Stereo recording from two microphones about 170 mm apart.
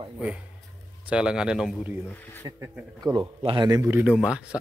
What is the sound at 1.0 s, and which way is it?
Speech, 5° right (ahead or behind).